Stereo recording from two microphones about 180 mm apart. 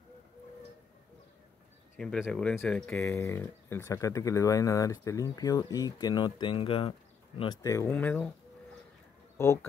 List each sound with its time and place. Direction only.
2.0 s speech: 5° left (ahead or behind); by 7.5 s 30° left (ahead or behind)
7.6 s speech: 15° left (ahead or behind)
9.4 s speech: 15° left (ahead or behind)